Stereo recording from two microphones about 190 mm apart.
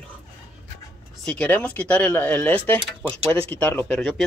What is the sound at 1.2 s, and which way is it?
Speech, 5° left (ahead or behind).